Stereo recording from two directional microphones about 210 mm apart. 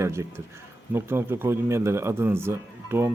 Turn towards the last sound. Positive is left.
turn(degrees=-10)  # may be behind; listen again after turning